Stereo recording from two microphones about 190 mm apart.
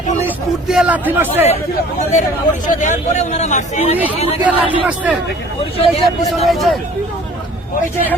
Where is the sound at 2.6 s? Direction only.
40° left (ahead or behind).